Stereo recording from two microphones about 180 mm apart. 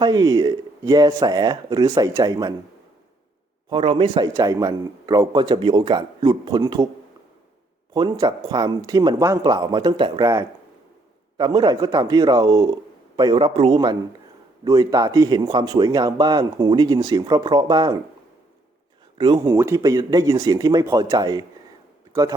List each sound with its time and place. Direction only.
0.0 s speech: 20° right (ahead or behind)
3.7 s speech: 30° right (ahead or behind)
7.9 s speech: 20° right (ahead or behind)
19.1 s a man's voice: 25° right (ahead or behind)